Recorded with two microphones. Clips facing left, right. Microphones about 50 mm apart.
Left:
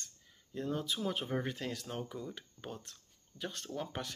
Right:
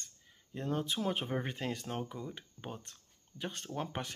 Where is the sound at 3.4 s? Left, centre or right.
Right.